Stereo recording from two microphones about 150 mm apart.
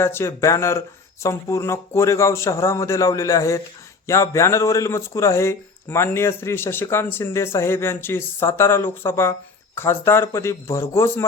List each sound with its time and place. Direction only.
0.0 s a man's voice: 15° left (ahead or behind)